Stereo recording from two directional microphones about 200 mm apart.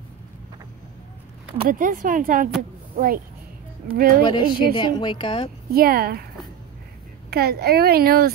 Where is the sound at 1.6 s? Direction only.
45° right (ahead or behind).